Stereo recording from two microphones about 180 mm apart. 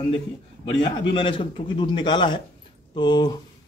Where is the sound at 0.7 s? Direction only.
30° left (ahead or behind).